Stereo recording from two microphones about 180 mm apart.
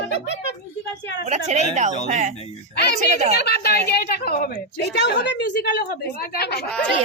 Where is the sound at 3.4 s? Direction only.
65° left (ahead or behind).